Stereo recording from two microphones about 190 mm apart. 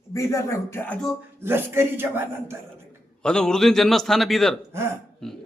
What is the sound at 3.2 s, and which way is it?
A man's voice, 5° left (ahead or behind).